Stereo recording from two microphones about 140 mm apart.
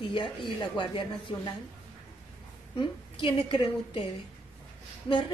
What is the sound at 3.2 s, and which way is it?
Speech, 35° left (ahead or behind).